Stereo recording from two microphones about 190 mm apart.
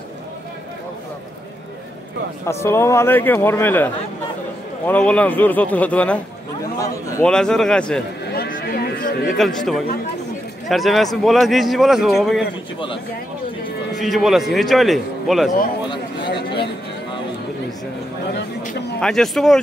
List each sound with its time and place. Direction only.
2.4 s a man's voice: 15° left (ahead or behind)
7.2 s a man's voice: 5° left (ahead or behind)
8.3 s a sound: 55° left (ahead or behind)
9.4 s a man's voice: centre (ahead or behind)
13.9 s a man's voice: centre (ahead or behind)
16.2 s a sound: 65° left (ahead or behind)
18.9 s a man's voice: 5° left (ahead or behind)